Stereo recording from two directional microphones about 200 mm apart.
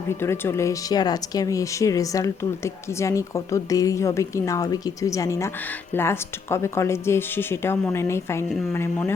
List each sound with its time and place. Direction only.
0.1 s speech: 10° left (ahead or behind)